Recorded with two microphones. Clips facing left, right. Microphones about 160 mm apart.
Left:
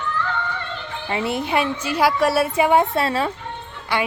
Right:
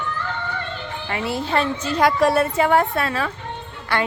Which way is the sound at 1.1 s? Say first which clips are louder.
Left 1 dB; 20° left (ahead or behind).